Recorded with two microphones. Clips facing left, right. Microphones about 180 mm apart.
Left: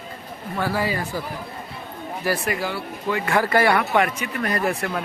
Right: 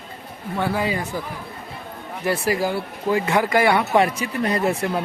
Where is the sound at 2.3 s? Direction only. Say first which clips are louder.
Right 3 dB; 30° right (ahead or behind).